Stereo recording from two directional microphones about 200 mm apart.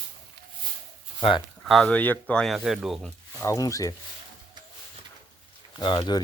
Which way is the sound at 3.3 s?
15° left (ahead or behind).